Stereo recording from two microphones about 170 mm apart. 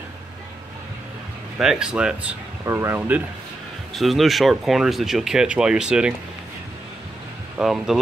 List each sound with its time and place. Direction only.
1.6 s speech: 5° right (ahead or behind)
2.6 s speech: 15° right (ahead or behind)
3.9 s speech: centre (ahead or behind)
7.5 s speech: 5° right (ahead or behind)